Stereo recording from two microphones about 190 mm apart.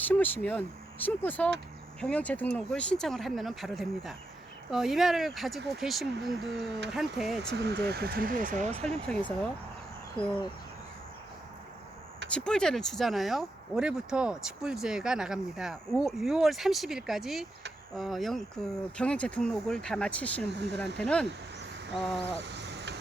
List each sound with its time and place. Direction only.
0.0 s speech: 10° left (ahead or behind)
7.5 s speech: 60° right (ahead or behind); by 9.0 s 35° right (ahead or behind)
9.0 s speech: 5° left (ahead or behind)
10.2 s cricket: 30° left (ahead or behind)
12.3 s speech: 5° left (ahead or behind)
20.6 s speech: 65° right (ahead or behind)
21.0 s speech: 5° left (ahead or behind)
22.4 s a sound: 65° right (ahead or behind)